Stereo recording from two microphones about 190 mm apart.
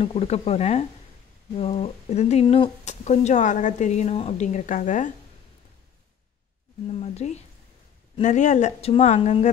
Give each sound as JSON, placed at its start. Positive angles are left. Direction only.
{"t": 0.0, "sound": "speech", "side_deg": 30}
{"t": 6.9, "sound": "speech", "side_deg": 35}